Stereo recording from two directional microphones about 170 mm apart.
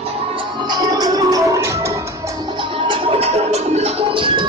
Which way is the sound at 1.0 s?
20° right (ahead or behind).